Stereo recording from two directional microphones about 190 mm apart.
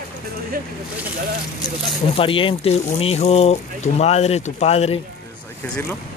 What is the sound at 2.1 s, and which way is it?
Speech, 30° left (ahead or behind).